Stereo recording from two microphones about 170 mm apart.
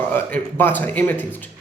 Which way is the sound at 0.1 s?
10° left (ahead or behind).